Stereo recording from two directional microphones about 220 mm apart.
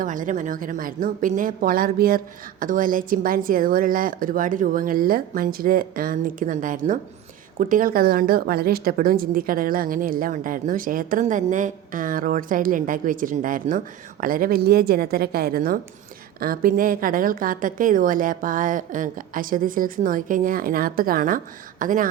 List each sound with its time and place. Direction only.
0.0 s a woman's voice: 35° right (ahead or behind)